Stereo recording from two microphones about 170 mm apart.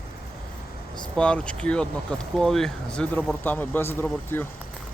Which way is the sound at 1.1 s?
5° left (ahead or behind).